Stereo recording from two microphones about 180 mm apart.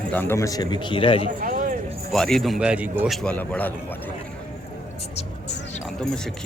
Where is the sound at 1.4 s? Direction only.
50° right (ahead or behind).